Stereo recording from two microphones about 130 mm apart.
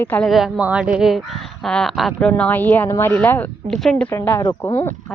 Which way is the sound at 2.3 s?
10° left (ahead or behind).